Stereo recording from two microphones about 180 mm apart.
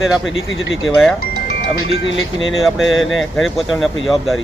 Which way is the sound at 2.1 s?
90° left.